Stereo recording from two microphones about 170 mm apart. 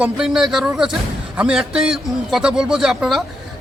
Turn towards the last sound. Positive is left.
turn(degrees=0)  # may be behind; listen again after turning